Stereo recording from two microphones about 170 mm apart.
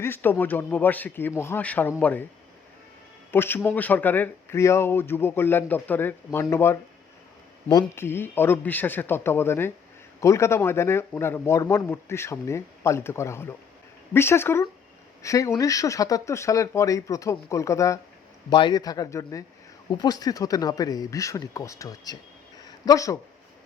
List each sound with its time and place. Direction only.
0.0 s speech: 10° left (ahead or behind)
3.3 s speech: 10° left (ahead or behind)
22.6 s a sound: 20° left (ahead or behind)